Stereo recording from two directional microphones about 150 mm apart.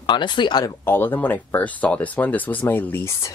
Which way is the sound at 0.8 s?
15° left (ahead or behind).